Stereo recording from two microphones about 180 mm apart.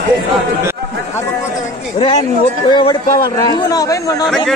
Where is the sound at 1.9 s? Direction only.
30° left (ahead or behind).